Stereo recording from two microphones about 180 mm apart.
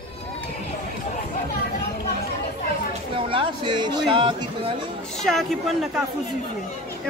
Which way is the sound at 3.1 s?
30° right (ahead or behind).